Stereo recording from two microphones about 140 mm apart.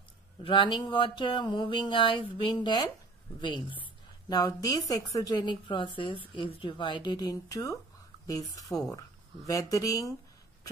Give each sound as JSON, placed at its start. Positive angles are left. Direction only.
{"t": 0.4, "sound": "a woman's voice", "side_deg": 35}